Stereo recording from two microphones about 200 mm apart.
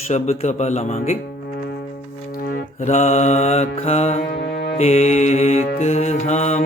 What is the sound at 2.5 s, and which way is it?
Mantra, 40° left (ahead or behind).